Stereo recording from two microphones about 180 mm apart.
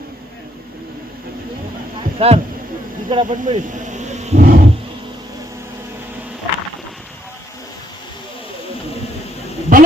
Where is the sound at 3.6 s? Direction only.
45° right (ahead or behind).